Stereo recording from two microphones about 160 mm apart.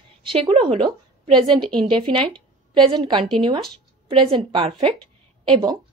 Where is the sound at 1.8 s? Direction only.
30° right (ahead or behind).